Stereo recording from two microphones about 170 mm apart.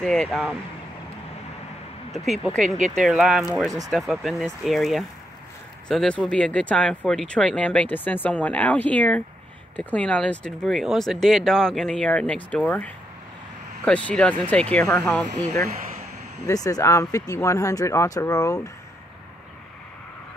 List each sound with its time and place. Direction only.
0.0 s speech: 5° left (ahead or behind)
2.1 s speech: centre (ahead or behind)
16.4 s speech: 20° left (ahead or behind)